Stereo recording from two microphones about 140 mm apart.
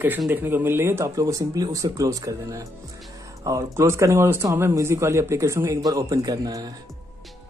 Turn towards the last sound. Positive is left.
turn(degrees=-25)  # may be behind; listen again after turning